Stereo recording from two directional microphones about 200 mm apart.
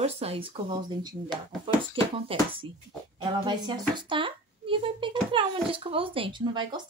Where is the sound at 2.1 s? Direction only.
25° right (ahead or behind).